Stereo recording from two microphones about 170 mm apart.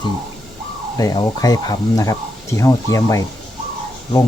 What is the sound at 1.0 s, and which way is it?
Speech, 20° left (ahead or behind).